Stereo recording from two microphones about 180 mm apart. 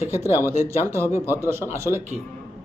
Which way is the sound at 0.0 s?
15° right (ahead or behind).